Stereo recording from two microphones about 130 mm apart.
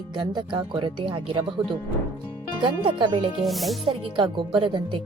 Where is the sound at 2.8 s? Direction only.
40° right (ahead or behind).